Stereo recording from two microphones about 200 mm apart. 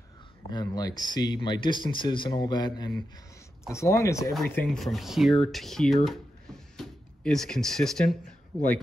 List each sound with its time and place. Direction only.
0.5 s speech: 20° left (ahead or behind)
4.3 s speech: centre (ahead or behind)